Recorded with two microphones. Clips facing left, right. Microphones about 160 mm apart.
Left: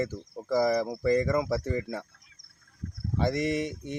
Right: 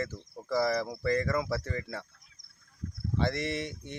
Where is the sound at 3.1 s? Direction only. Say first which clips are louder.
Left 4 dB; 15° left (ahead or behind).